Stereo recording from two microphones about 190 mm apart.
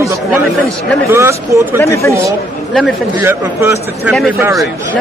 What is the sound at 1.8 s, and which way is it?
Speech, 15° left (ahead or behind).